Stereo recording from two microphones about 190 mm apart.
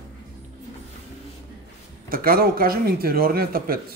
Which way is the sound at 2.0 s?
50° right (ahead or behind).